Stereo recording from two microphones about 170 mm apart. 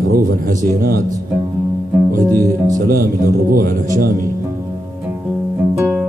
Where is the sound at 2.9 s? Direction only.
60° right (ahead or behind).